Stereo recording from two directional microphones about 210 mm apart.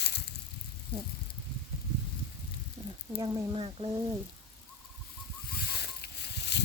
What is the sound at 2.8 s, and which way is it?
Snake, 30° right (ahead or behind).